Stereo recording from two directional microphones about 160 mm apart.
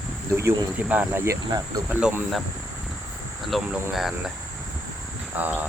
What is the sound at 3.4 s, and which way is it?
Cricket, centre (ahead or behind).